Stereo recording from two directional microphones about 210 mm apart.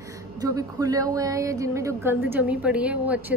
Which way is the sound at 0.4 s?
15° right (ahead or behind).